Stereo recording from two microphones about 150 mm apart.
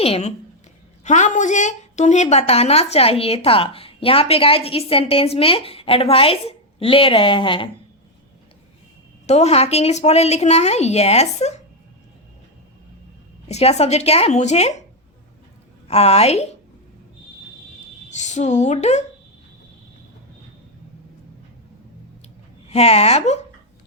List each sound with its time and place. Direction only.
0.0 s a woman's voice: 45° left (ahead or behind)
9.2 s speech: 45° left (ahead or behind)
13.5 s speech: 45° left (ahead or behind)
15.9 s speech: 45° left (ahead or behind)
18.2 s speech: 50° left (ahead or behind)
22.7 s speech: 45° left (ahead or behind)